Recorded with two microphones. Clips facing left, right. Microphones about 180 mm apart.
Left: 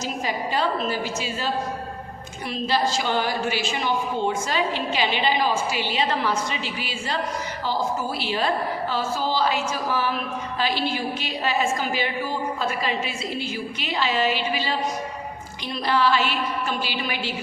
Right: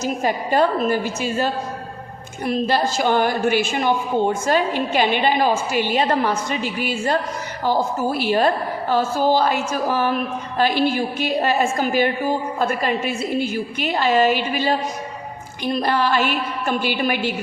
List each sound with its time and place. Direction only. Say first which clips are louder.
0.0 s a woman's voice: right 5 dB; 50° right (ahead or behind)